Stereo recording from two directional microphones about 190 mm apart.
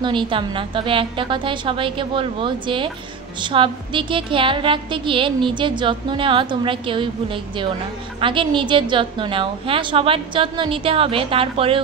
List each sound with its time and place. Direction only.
0.0 s a woman's voice: 25° right (ahead or behind)